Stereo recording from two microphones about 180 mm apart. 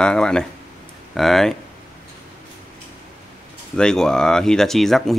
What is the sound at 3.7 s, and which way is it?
Speech, 5° left (ahead or behind).